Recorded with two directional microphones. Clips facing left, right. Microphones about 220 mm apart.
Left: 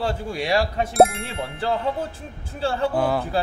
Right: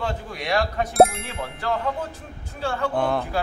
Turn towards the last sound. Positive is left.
turn(degrees=5)  # may be behind; listen again after turning